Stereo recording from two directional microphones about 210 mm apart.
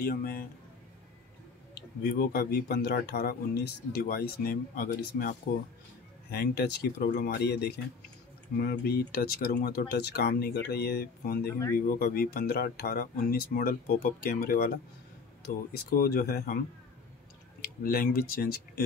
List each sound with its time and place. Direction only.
0.0 s speech: 45° left (ahead or behind)
2.0 s speech: 50° left (ahead or behind)
6.3 s speech: 50° left (ahead or behind)
17.8 s speech: 45° left (ahead or behind)